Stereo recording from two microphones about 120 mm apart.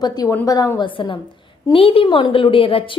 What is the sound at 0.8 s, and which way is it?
A woman's voice, 40° left (ahead or behind).